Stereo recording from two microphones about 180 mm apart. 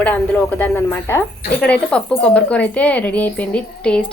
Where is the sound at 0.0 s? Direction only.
10° left (ahead or behind).